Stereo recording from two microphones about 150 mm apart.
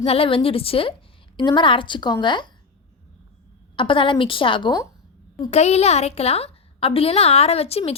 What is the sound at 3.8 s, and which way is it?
Speech, 35° left (ahead or behind).